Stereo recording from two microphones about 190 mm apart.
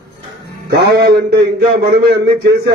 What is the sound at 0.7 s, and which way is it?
A man's voice, 60° right (ahead or behind).